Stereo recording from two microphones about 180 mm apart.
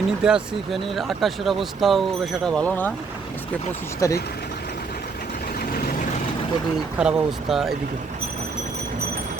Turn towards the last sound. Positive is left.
turn(degrees=0)  # may be behind; listen again after turning